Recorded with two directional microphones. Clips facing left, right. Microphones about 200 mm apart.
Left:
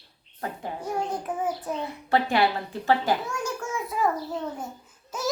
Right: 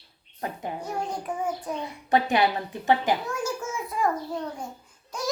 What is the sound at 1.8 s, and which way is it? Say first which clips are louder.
A child's voice: right 1 dB; 20° right (ahead or behind).